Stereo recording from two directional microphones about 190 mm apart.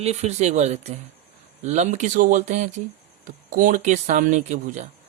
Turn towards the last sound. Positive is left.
turn(degrees=-40)  # may be behind; listen again after turning